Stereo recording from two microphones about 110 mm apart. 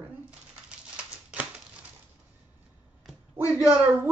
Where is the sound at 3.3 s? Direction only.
15° right (ahead or behind).